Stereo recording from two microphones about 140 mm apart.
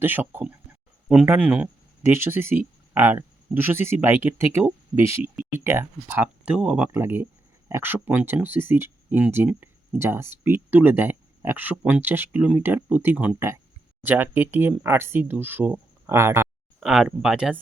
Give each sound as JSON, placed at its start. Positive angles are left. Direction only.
{"t": 0.0, "sound": "speech", "side_deg": -15}
{"t": 16.8, "sound": "speech", "side_deg": -5}